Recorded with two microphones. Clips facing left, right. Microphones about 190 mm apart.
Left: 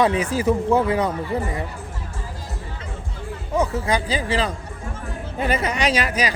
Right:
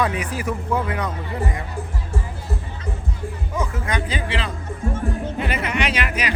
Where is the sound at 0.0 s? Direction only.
25° left (ahead or behind).